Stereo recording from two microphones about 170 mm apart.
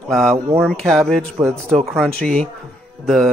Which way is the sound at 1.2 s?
15° right (ahead or behind).